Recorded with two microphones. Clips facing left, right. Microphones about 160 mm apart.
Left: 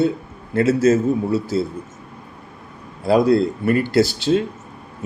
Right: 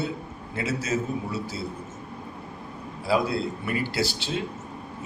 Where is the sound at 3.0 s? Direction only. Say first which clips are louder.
Left 10 dB; 50° left (ahead or behind).